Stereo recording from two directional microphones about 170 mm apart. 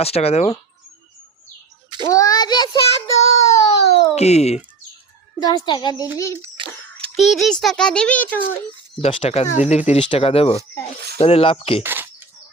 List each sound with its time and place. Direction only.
0.0 s speech: 35° left (ahead or behind)
2.0 s child singing: 20° left (ahead or behind)
3.4 s baby cry: 20° left (ahead or behind)
4.1 s speech: 40° left (ahead or behind)
5.4 s a child's voice: 25° left (ahead or behind)
7.2 s a child's voice: centre (ahead or behind)
9.0 s speech: 35° left (ahead or behind)
11.8 s bird: 10° right (ahead or behind)